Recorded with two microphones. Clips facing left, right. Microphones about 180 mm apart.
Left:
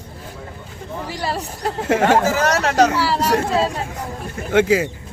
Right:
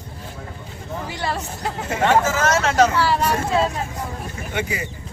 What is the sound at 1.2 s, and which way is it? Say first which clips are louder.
Speech: left 3 dB; 35° left (ahead or behind).